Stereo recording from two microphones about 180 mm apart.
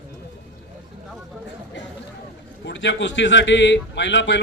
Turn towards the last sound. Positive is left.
turn(degrees=85)